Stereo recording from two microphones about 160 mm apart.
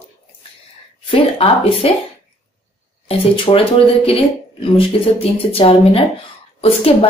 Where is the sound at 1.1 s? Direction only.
35° left (ahead or behind).